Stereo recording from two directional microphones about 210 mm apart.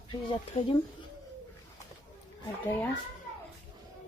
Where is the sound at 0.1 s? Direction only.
20° left (ahead or behind).